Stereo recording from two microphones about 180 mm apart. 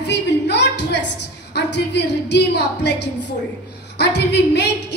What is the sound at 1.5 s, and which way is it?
A woman's voice, 70° left (ahead or behind).